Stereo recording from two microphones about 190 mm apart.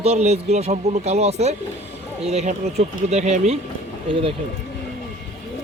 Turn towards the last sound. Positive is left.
turn(degrees=-30)  # may be behind; listen again after turning